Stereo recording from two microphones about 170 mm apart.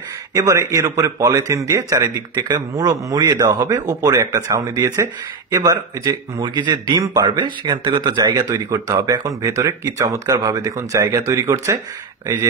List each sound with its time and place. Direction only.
0.3 s a man's voice: 20° right (ahead or behind)